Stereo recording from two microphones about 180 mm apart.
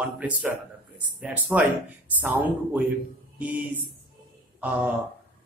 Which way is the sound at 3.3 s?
10° right (ahead or behind).